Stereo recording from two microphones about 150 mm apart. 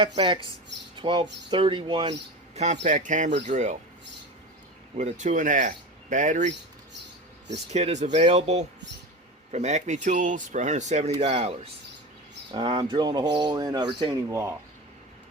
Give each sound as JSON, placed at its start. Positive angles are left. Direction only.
{"t": 0.0, "sound": "speech", "side_deg": -30}
{"t": 2.6, "sound": "speech", "side_deg": -55}
{"t": 4.9, "sound": "speech", "side_deg": -50}
{"t": 7.5, "sound": "speech", "side_deg": -50}
{"t": 12.5, "sound": "speech", "side_deg": -30}